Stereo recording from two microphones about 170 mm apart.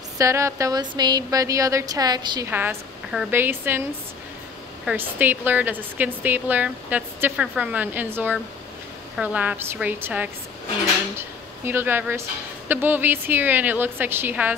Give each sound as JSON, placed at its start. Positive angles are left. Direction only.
{"t": 0.2, "sound": "a woman's voice", "side_deg": -15}
{"t": 2.5, "sound": "a woman's voice", "side_deg": -10}
{"t": 4.8, "sound": "a woman's voice", "side_deg": -10}